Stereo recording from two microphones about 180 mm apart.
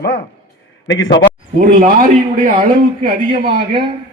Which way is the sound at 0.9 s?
85° left.